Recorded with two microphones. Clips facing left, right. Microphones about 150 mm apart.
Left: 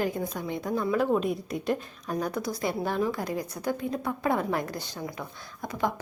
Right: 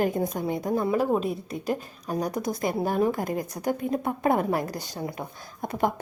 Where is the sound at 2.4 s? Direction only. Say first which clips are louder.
Right 3 dB; 50° right (ahead or behind).